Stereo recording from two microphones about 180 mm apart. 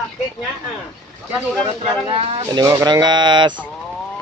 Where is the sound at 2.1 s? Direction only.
30° right (ahead or behind).